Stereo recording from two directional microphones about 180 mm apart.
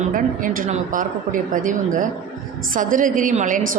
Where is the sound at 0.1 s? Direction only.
45° right (ahead or behind).